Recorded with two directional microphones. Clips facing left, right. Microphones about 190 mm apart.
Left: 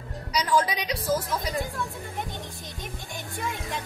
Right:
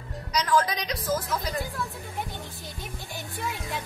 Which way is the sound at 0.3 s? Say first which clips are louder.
Even; 10° left (ahead or behind).